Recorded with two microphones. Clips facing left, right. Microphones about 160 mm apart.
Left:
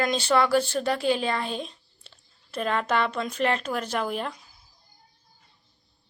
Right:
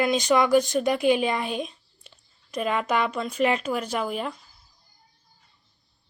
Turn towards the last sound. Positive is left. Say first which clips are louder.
# right 1 dB
turn(degrees=-5)  # may be behind; listen again after turning